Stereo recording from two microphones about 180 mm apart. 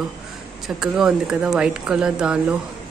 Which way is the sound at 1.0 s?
5° right (ahead or behind).